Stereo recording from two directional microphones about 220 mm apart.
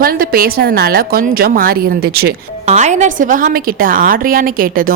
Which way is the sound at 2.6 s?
30° right (ahead or behind).